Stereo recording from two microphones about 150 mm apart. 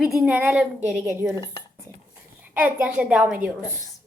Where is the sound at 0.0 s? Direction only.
5° right (ahead or behind).